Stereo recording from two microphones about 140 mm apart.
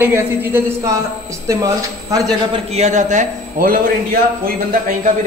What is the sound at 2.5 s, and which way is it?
A man's voice, 50° right (ahead or behind).